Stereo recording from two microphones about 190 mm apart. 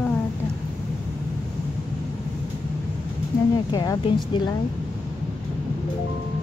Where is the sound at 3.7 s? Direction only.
20° left (ahead or behind).